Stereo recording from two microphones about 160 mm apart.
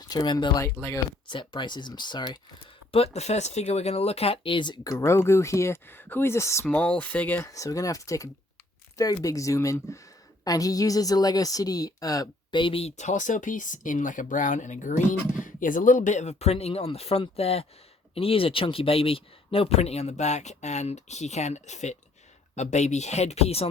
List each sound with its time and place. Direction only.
0.0 s speech: 25° left (ahead or behind)
1.3 s speech: 30° left (ahead or behind)
2.9 s speech: 40° left (ahead or behind)